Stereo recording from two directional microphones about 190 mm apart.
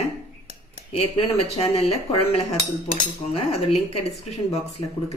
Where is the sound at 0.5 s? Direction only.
30° left (ahead or behind).